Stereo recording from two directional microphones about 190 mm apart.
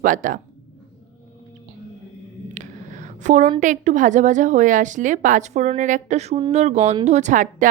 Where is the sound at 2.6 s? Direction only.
40° right (ahead or behind).